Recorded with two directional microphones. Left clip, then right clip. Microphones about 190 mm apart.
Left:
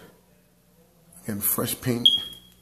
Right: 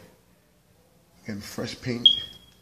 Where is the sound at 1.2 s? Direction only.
15° left (ahead or behind).